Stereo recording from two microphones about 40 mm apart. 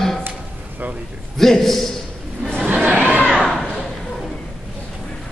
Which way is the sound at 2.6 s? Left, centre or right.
Right.